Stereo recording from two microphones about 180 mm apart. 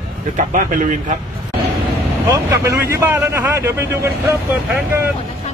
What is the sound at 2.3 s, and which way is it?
Speech, 15° right (ahead or behind).